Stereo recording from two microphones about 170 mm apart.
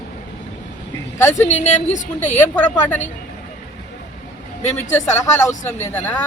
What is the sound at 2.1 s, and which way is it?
Speech, 10° left (ahead or behind).